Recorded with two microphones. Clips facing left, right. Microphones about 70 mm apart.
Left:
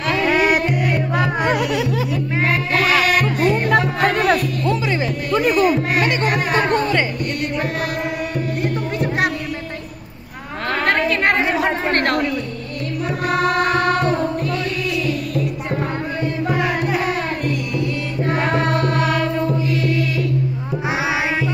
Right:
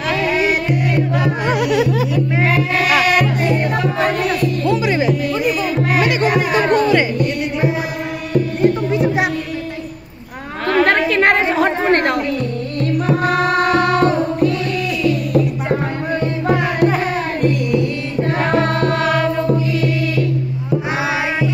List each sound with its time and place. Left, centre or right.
0.3 s music: left
1.2 s music: centre
1.8 s speech: right
2.1 s speech: centre
2.9 s music: right
4.2 s music: left
4.8 s music: centre
5.3 s music: left
5.9 s music: centre
6.5 s music: left
11.1 s chatter: right
11.9 s a sound: centre